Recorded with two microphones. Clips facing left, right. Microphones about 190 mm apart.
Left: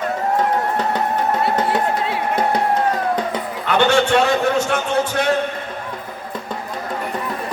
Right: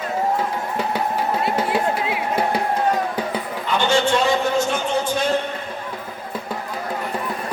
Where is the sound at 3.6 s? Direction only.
65° left (ahead or behind).